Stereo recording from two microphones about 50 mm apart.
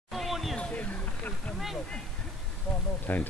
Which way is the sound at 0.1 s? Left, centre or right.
Centre.